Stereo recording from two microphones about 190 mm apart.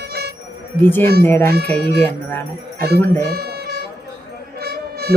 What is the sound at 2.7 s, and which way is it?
Speech, 55° right (ahead or behind).